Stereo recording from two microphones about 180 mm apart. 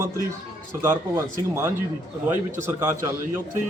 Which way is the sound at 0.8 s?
15° right (ahead or behind).